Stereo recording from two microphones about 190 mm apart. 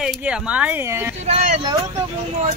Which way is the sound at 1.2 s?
35° right (ahead or behind).